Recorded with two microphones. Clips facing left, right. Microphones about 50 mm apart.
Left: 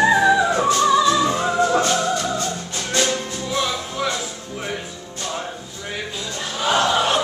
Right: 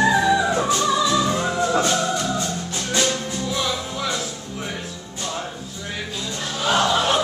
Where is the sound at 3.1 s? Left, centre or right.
Centre.